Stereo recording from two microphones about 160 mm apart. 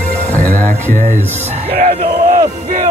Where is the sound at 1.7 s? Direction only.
60° right (ahead or behind).